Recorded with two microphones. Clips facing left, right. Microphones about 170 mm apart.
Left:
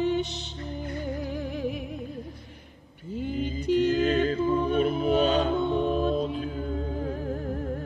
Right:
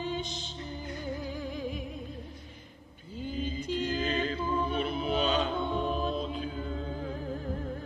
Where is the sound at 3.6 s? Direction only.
60° left (ahead or behind).